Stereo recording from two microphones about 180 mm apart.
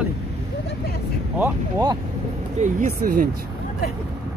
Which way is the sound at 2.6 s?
45° right (ahead or behind).